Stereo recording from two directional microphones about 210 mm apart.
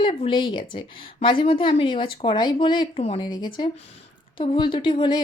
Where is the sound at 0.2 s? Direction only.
25° left (ahead or behind).